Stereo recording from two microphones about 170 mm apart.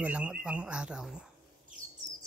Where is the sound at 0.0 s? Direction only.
5° right (ahead or behind).